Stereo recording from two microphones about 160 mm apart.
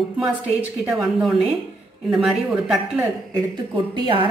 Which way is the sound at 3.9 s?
30° right (ahead or behind).